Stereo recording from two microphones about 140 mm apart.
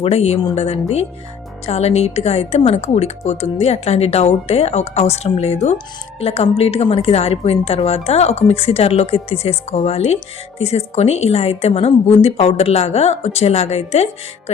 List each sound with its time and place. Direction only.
0.0 s speech: 45° left (ahead or behind)